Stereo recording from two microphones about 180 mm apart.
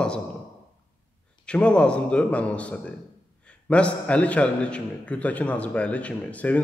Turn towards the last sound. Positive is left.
turn(degrees=10)  # may be behind; listen again after turning